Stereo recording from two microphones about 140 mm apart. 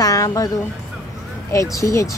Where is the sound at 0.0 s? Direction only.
25° left (ahead or behind).